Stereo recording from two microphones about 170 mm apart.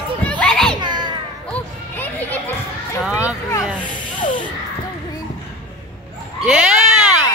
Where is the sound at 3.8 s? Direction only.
30° left (ahead or behind).